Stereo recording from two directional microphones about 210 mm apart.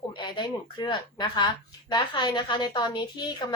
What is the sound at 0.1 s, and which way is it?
A woman's voice, 20° left (ahead or behind).